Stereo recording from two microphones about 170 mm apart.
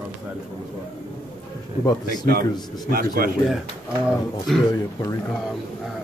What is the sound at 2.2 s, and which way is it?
A man's voice, 65° right (ahead or behind).